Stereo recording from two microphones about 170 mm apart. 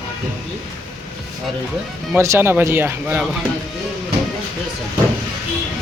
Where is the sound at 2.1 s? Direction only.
15° right (ahead or behind).